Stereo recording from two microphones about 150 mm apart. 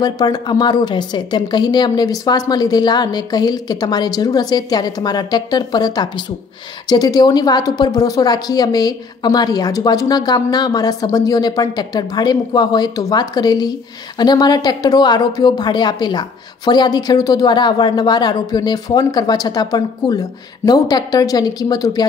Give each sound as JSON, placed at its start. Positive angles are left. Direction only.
{"t": 0.0, "sound": "a woman's voice", "side_deg": 25}